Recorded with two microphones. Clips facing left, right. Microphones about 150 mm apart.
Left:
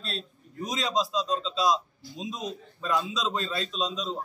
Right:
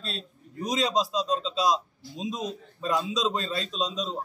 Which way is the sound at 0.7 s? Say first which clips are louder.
Right 3 dB; 40° right (ahead or behind).